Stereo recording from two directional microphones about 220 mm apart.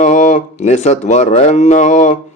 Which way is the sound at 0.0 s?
35° left (ahead or behind).